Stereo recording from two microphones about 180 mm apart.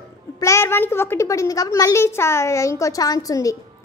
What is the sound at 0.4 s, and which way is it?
A child's voice, 15° left (ahead or behind).